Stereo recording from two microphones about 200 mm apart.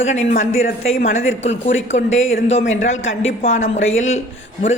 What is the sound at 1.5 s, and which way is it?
Speech, 35° left (ahead or behind).